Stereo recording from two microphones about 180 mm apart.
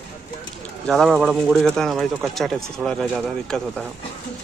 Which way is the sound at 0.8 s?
Centre (ahead or behind).